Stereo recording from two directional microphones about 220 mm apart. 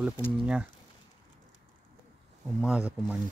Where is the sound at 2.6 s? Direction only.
5° right (ahead or behind).